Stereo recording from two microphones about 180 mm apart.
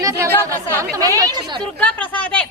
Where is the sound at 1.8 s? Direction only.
5° left (ahead or behind).